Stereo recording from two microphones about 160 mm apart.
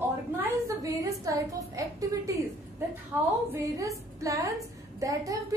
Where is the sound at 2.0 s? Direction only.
20° right (ahead or behind).